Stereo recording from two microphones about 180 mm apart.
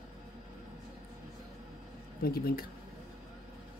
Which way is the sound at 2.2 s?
55° left (ahead or behind).